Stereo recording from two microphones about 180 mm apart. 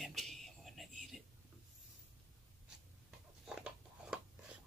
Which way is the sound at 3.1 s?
5° right (ahead or behind).